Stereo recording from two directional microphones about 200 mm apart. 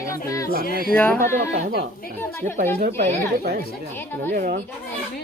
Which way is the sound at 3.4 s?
50° right (ahead or behind).